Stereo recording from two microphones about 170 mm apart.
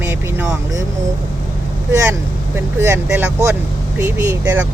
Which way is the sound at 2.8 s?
10° right (ahead or behind).